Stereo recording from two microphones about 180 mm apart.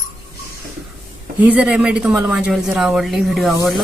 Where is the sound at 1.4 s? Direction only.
5° right (ahead or behind).